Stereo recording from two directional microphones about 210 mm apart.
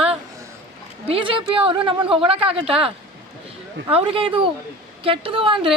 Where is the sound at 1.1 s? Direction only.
25° right (ahead or behind).